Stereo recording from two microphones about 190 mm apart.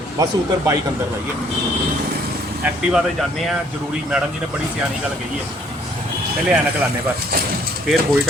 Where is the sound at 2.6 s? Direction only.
5° right (ahead or behind).